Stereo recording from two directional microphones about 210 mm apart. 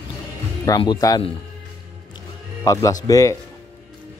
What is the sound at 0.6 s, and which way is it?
Speech, 20° left (ahead or behind).